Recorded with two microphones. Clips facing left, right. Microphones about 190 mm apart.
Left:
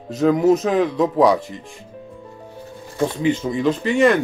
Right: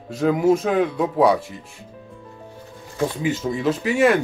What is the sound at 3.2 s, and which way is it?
Speech, 5° right (ahead or behind).